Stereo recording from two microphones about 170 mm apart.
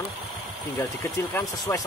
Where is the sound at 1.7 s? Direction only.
20° left (ahead or behind).